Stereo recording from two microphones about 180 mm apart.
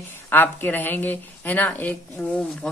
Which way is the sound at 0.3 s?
10° left (ahead or behind).